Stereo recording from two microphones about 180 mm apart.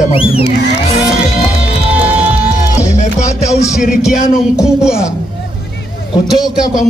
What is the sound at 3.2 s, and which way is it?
Music, 15° left (ahead or behind).